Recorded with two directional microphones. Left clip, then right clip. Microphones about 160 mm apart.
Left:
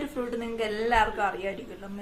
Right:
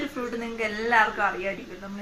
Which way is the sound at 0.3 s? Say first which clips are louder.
Even; 45° left (ahead or behind).